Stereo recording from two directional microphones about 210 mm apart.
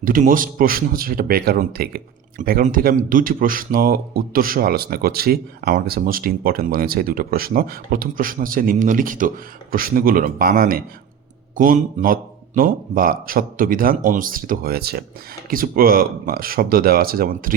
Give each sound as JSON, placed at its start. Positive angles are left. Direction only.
{"t": 0.0, "sound": "speech", "side_deg": -40}